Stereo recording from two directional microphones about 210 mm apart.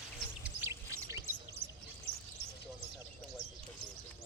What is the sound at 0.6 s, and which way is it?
Bird, 15° right (ahead or behind).